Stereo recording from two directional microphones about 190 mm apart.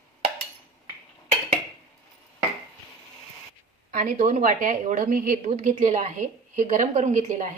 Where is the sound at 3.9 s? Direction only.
45° right (ahead or behind).